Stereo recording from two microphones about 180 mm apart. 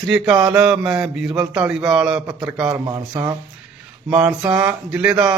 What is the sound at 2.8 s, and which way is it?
Speech, 20° right (ahead or behind).